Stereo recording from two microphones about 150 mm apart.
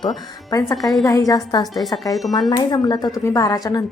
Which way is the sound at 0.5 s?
25° left (ahead or behind).